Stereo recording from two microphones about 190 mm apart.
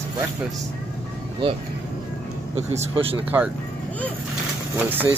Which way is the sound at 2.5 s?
30° right (ahead or behind).